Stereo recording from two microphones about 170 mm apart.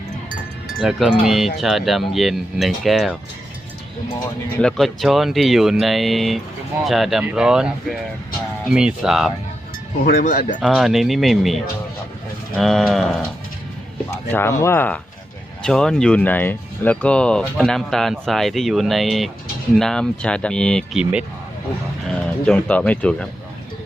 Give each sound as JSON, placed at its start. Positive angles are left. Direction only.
{"t": 0.8, "sound": "speech", "side_deg": 0}
{"t": 4.6, "sound": "speech", "side_deg": 0}
{"t": 10.0, "sound": "speech", "side_deg": 50}
{"t": 10.6, "sound": "speech", "side_deg": 0}
{"t": 14.3, "sound": "speech", "side_deg": 15}
{"t": 22.4, "sound": "speech", "side_deg": 5}